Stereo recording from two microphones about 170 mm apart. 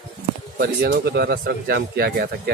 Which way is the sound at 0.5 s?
65° right (ahead or behind).